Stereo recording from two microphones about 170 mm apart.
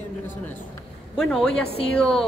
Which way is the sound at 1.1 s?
Centre (ahead or behind).